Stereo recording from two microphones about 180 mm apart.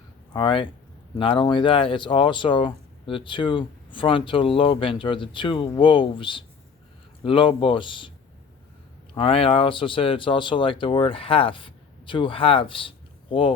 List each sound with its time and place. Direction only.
0.3 s speech: 25° left (ahead or behind)
9.1 s speech: 30° left (ahead or behind)